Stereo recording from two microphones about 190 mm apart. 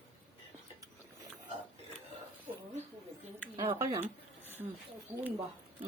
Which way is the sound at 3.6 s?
20° right (ahead or behind).